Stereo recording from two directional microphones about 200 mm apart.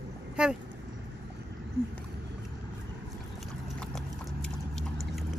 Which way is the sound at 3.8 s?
5° left (ahead or behind).